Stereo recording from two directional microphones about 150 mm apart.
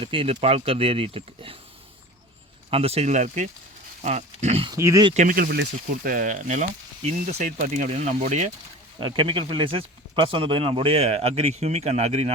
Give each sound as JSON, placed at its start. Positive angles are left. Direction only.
{"t": 0.0, "sound": "speech", "side_deg": -35}
{"t": 2.6, "sound": "speech", "side_deg": -40}
{"t": 4.7, "sound": "speech", "side_deg": -25}
{"t": 5.1, "sound": "speech", "side_deg": -65}
{"t": 9.0, "sound": "speech", "side_deg": -35}